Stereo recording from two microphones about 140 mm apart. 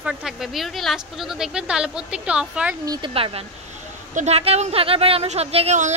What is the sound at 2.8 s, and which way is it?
Speech, 25° right (ahead or behind).